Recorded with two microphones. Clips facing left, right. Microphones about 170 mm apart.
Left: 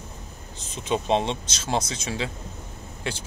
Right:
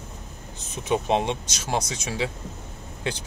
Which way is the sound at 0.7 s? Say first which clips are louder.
Even; 15° right (ahead or behind).